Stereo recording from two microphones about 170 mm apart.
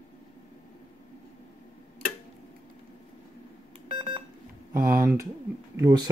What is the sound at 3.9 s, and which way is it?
Beep, 30° right (ahead or behind).